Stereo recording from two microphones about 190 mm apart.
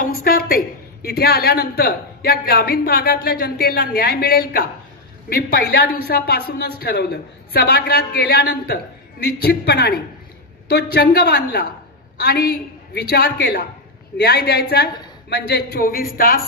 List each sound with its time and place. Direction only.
0.0 s a woman's voice: 50° left (ahead or behind)